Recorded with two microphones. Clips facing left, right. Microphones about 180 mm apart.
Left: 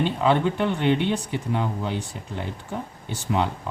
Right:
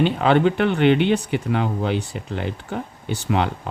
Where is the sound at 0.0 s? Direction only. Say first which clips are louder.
Right 4 dB; 75° right (ahead or behind).